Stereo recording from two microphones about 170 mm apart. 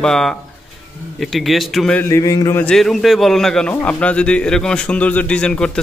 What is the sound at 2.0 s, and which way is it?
Speech, 20° left (ahead or behind).